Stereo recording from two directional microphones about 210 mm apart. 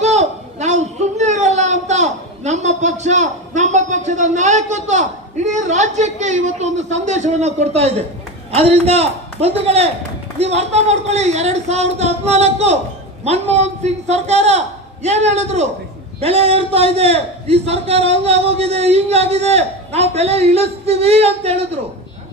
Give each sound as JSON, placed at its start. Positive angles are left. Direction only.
{"t": 0.0, "sound": "a child's voice", "side_deg": -35}